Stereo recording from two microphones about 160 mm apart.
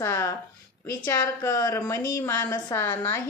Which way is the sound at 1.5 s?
20° left (ahead or behind).